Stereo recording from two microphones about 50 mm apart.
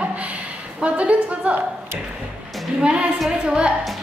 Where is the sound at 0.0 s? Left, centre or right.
Right.